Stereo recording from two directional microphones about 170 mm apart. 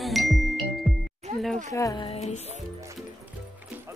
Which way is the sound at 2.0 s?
40° left (ahead or behind).